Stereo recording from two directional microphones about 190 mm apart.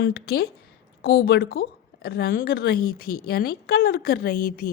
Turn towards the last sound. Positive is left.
turn(degrees=50)  # may be behind; listen again after turning